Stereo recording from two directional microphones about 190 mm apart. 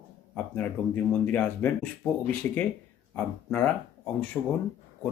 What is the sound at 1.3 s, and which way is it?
Speech, 10° left (ahead or behind).